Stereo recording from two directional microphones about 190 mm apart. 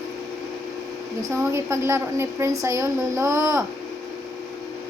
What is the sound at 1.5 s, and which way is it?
A woman's voice, 15° right (ahead or behind).